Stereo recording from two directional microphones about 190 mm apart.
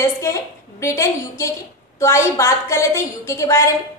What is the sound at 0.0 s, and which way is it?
A woman's voice, 15° left (ahead or behind).